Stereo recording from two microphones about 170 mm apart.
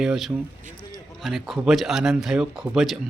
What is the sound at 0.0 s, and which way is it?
Speech, centre (ahead or behind).